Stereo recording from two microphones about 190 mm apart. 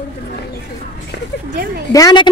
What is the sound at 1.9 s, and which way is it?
Speech, 20° left (ahead or behind).